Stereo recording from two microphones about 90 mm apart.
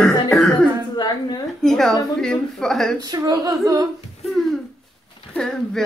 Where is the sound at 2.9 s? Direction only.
45° right (ahead or behind).